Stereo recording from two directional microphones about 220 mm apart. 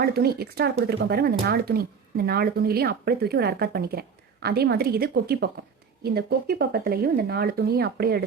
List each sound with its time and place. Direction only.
0.0 s speech: 45° right (ahead or behind)